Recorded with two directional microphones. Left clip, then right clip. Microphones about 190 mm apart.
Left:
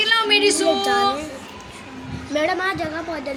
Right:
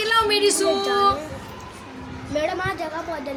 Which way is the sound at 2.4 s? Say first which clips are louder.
Left 3 dB; 50° left (ahead or behind).